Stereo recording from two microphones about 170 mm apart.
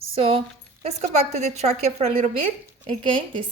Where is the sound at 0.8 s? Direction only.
40° right (ahead or behind).